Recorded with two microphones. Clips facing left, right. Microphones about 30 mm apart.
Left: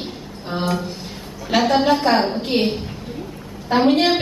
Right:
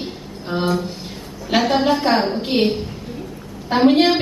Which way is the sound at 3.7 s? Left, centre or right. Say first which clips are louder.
Right 2 dB; centre.